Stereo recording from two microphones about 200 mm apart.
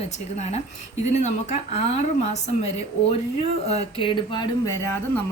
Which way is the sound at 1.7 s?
35° left (ahead or behind).